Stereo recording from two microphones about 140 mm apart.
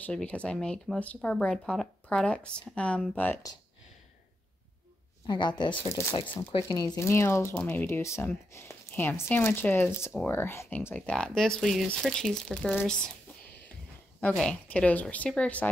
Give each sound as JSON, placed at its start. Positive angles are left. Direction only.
{"t": 0.0, "sound": "speech", "side_deg": 10}
{"t": 5.2, "sound": "speech", "side_deg": 30}
{"t": 5.8, "sound": "speech", "side_deg": 20}
{"t": 14.2, "sound": "speech", "side_deg": 5}